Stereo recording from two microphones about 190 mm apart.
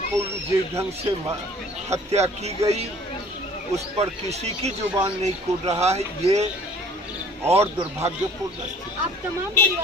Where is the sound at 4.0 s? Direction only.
35° right (ahead or behind).